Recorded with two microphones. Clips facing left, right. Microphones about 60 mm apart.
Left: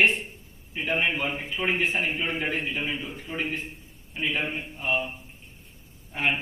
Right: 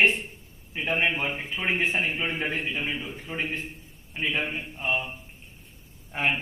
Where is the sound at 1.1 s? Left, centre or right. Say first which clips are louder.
Even; centre.